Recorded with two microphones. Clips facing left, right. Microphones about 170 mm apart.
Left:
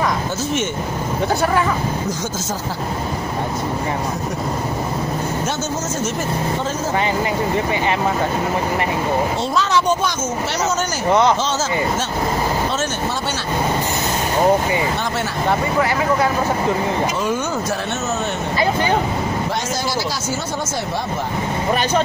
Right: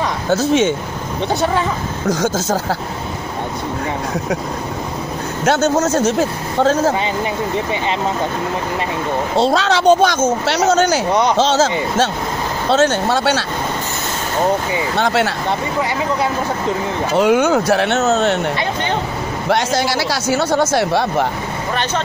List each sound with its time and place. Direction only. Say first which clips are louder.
5.4 s speech: right 8 dB; 70° right (ahead or behind)
9.4 s speech: right 4 dB; 80° right
11.1 s speech: left 1 dB; 15° right (ahead or behind)
11.3 s speech: right 6 dB; 75° right (ahead or behind)
15.0 s speech: right 7 dB; 75° right (ahead or behind)
17.1 s speech: right 8 dB; 75° right (ahead or behind)
20.2 s speech: right 8 dB; 70° right (ahead or behind)